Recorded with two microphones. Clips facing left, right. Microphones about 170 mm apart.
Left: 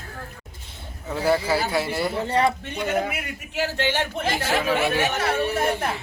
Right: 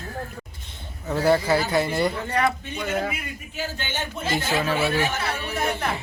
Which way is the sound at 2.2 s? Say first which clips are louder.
Left 2 dB; 30° left (ahead or behind).